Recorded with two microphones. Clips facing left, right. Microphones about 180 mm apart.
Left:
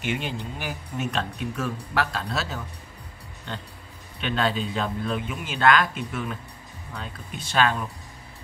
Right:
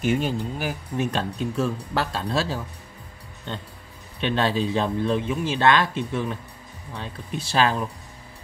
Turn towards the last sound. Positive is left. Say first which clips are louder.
# right 2 dB
turn(degrees=-30)  # may be behind; listen again after turning